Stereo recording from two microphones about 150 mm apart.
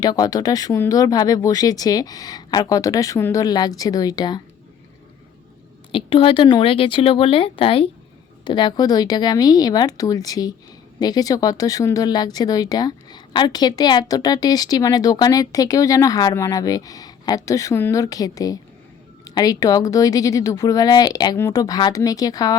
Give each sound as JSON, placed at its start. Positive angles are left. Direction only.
{"t": 0.0, "sound": "speech", "side_deg": 25}
{"t": 5.9, "sound": "speech", "side_deg": 35}